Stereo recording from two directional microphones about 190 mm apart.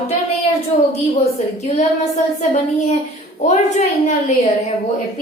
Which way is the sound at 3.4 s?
40° left (ahead or behind).